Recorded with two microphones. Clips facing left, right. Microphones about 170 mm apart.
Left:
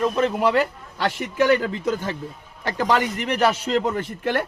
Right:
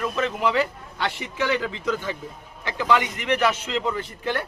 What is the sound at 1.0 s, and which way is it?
Speech, 45° left (ahead or behind).